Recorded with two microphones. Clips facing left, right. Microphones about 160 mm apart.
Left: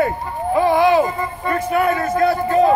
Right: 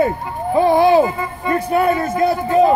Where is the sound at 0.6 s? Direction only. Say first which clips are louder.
Right 2 dB; 35° right (ahead or behind).